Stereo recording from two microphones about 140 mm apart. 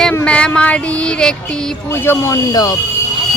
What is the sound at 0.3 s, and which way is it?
Child singing, 5° left (ahead or behind).